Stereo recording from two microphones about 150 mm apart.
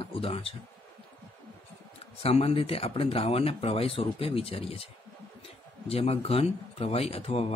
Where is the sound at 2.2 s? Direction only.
40° left (ahead or behind).